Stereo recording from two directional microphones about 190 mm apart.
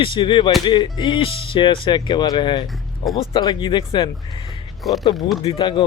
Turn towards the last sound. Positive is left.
turn(degrees=25)  # may be behind; listen again after turning